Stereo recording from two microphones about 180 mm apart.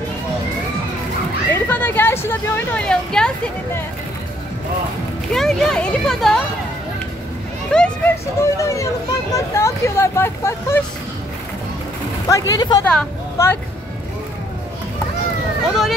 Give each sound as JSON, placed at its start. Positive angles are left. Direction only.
{"t": 1.5, "sound": "speech", "side_deg": 10}
{"t": 5.3, "sound": "speech", "side_deg": 0}
{"t": 7.7, "sound": "a child's voice", "side_deg": 5}
{"t": 12.3, "sound": "speech", "side_deg": 20}
{"t": 12.8, "sound": "speech", "side_deg": 10}